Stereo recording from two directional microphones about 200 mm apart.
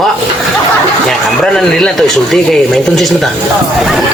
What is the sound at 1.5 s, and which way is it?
Speech, centre (ahead or behind).